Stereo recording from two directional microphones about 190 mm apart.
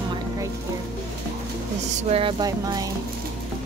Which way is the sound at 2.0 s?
30° right (ahead or behind).